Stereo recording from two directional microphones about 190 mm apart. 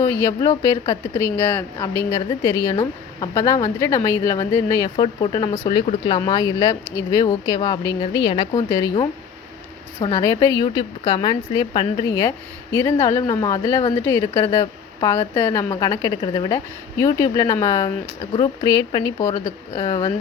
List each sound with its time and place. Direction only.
0.0 s speech: 15° left (ahead or behind)